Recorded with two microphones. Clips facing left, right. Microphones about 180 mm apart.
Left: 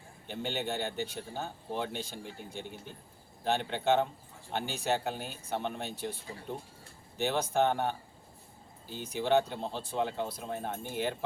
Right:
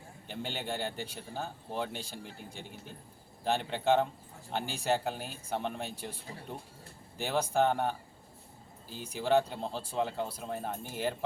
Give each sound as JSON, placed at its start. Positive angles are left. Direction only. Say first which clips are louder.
{"t": 0.3, "sound": "speech", "louder": "left 3 dB", "side_deg": 0}
{"t": 7.2, "sound": "speech", "louder": "even", "side_deg": 0}